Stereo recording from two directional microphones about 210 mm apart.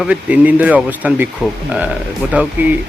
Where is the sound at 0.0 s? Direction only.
5° right (ahead or behind).